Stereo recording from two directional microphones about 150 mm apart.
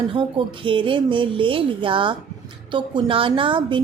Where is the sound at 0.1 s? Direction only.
35° right (ahead or behind).